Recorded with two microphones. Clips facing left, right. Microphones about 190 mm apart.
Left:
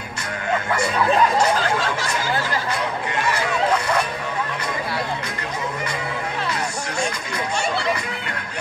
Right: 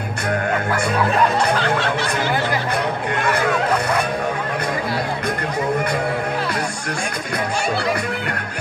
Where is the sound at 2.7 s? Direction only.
55° right (ahead or behind).